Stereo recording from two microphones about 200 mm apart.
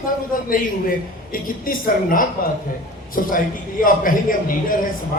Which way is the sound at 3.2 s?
45° left (ahead or behind).